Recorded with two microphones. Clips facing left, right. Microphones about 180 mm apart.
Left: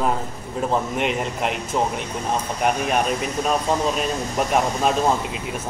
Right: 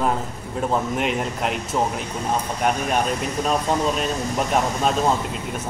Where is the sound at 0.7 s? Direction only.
Centre (ahead or behind).